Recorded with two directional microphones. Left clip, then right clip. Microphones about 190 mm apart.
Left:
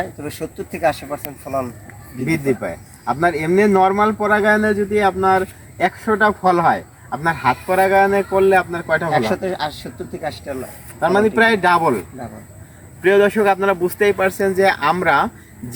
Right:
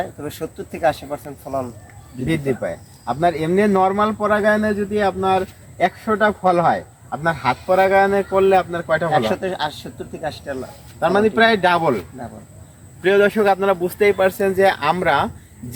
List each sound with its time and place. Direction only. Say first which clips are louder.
0.0 s speech: left 1 dB; 10° left (ahead or behind)
3.1 s speech: left 1 dB; 15° right (ahead or behind)
9.4 s speech: left 1 dB; 20° left (ahead or behind)
11.0 s speech: left 1 dB; 15° right (ahead or behind)
13.0 s speech: left 1 dB; 20° right (ahead or behind)